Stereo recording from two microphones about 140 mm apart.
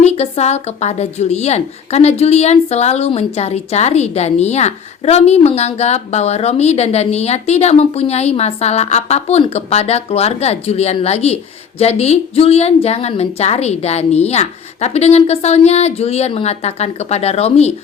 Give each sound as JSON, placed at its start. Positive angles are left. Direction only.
{"t": 0.0, "sound": "a woman's voice", "side_deg": 50}